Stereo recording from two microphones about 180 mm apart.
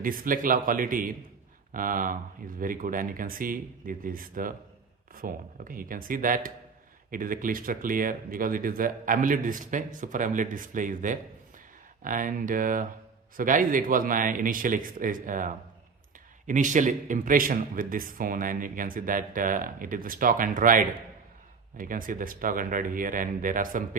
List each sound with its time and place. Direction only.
0.0 s a man's voice: 50° right (ahead or behind)